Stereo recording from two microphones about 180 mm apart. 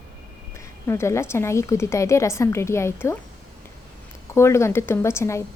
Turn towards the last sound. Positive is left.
turn(degrees=15)  # may be behind; listen again after turning